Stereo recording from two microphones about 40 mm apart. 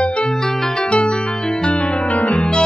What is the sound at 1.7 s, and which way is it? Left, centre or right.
Music, left.